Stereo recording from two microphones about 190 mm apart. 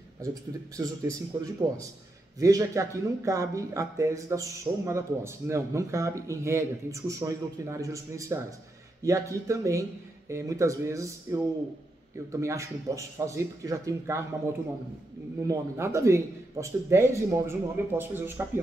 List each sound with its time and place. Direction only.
0.2 s speech: 20° right (ahead or behind)
15.4 s speech: 15° right (ahead or behind)